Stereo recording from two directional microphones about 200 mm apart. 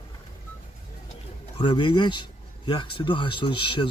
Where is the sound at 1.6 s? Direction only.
25° left (ahead or behind).